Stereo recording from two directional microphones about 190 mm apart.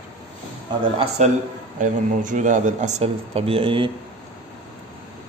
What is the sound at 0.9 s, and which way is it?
Speech, 35° right (ahead or behind).